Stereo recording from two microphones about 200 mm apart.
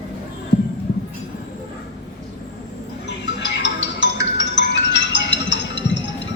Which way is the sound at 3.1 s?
60° left (ahead or behind).